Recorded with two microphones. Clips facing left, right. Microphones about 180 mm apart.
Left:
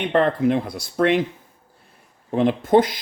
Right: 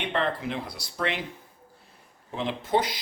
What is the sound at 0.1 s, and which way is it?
Speech, 50° left (ahead or behind).